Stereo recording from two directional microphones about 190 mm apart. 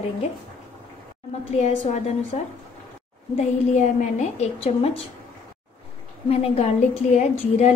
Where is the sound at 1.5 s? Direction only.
35° left (ahead or behind).